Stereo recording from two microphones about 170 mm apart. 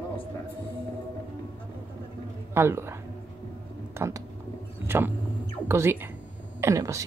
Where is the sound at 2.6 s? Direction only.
15° right (ahead or behind).